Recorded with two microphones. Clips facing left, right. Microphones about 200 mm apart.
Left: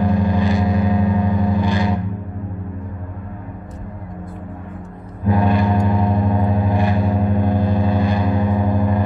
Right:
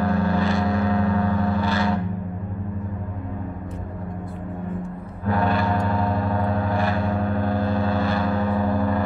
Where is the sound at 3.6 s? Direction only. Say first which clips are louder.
Right 1 dB; 60° right (ahead or behind).